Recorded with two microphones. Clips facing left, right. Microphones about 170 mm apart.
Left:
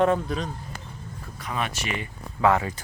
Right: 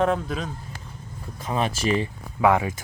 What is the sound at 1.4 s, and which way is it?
Speech, 30° right (ahead or behind).